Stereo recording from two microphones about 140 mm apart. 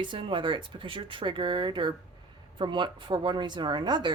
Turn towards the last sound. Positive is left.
turn(degrees=-30)  # may be behind; listen again after turning